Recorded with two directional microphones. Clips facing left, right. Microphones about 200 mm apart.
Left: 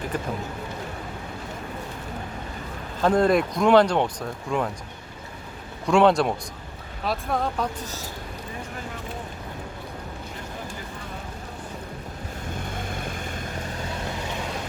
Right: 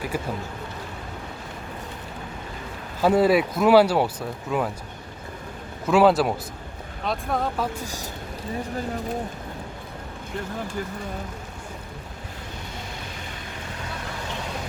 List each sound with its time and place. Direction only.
0.1 s speech: 10° right (ahead or behind)
3.0 s speech: 5° right (ahead or behind)
5.8 s speech: 5° right (ahead or behind)
12.7 s boat: 50° left (ahead or behind)